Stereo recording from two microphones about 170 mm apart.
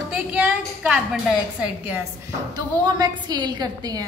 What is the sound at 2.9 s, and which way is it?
A woman's voice, 25° right (ahead or behind).